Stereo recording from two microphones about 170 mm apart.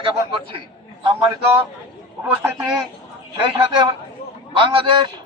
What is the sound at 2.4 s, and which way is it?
Speech, 10° right (ahead or behind).